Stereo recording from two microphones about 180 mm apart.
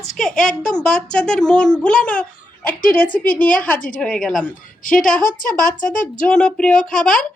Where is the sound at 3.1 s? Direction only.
50° left (ahead or behind).